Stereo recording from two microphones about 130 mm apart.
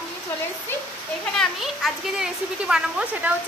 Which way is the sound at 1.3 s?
Centre (ahead or behind).